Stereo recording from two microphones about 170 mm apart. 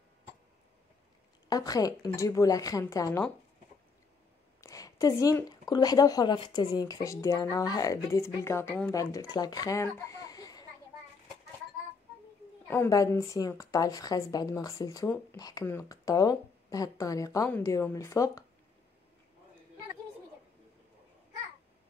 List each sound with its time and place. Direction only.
1.5 s speech: 20° left (ahead or behind)
4.6 s speech: 20° left (ahead or behind)
12.6 s speech: 15° left (ahead or behind)